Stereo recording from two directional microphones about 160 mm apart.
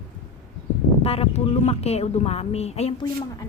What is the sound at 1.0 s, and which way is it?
Speech, 40° left (ahead or behind).